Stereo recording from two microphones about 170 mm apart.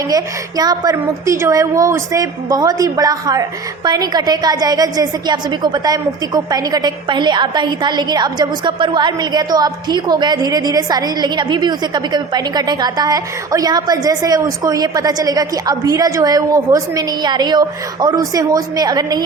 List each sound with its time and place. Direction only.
0.1 s a woman's voice: 20° right (ahead or behind)